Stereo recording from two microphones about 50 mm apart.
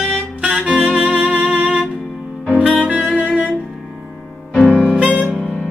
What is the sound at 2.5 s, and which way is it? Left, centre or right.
Saxophone, right.